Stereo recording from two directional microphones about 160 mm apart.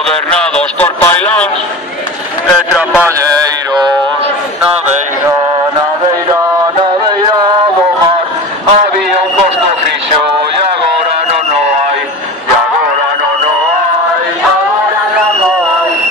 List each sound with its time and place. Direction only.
0.3 s a man's voice: 5° left (ahead or behind)